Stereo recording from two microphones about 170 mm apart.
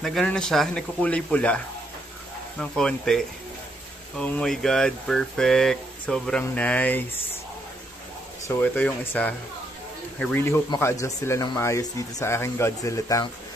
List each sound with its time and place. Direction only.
0.0 s speech: centre (ahead or behind)
2.6 s speech: 5° left (ahead or behind)
8.5 s speech: 10° left (ahead or behind)